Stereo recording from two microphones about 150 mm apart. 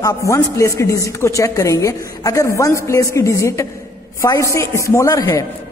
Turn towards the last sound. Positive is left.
turn(degrees=20)  # may be behind; listen again after turning